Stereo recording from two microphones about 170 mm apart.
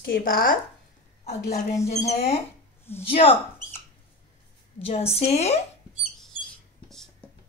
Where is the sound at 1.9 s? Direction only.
40° left (ahead or behind).